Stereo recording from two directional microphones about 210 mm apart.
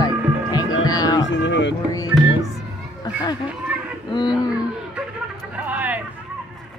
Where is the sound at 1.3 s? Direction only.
60° left (ahead or behind).